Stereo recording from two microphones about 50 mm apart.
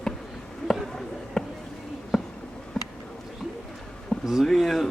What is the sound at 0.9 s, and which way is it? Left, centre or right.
Basketball bounce, centre.